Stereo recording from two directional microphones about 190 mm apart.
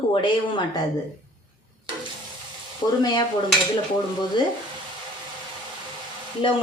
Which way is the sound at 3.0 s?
25° left (ahead or behind).